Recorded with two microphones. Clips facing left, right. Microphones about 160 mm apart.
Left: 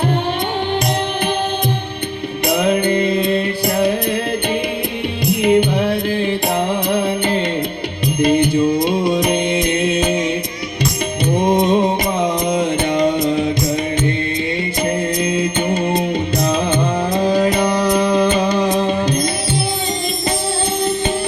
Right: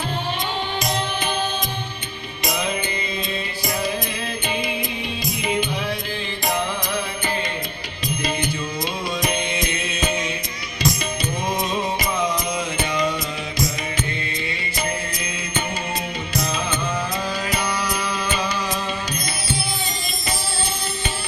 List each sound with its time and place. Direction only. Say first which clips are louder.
2.5 s music: left 10 dB; 60° left (ahead or behind)
5.2 s music: left 12 dB; 65° left (ahead or behind)
8.0 s music: left 11 dB; 60° left (ahead or behind)
11.3 s music: left 12 dB; 55° left (ahead or behind)
12.2 s music: left 8 dB; 25° left (ahead or behind)
13.0 s music: left 11 dB; 55° left (ahead or behind)
15.4 s music: left 10 dB; 55° left (ahead or behind)